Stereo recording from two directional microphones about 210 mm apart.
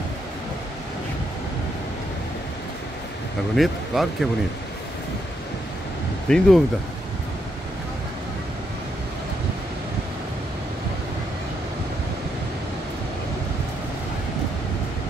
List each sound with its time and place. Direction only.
3.5 s speech: centre (ahead or behind)
6.2 s speech: 5° left (ahead or behind)